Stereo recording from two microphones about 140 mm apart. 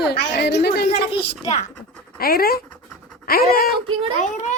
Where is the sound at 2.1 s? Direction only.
90° left.